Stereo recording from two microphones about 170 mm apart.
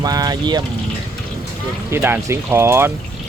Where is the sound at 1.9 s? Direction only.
15° right (ahead or behind).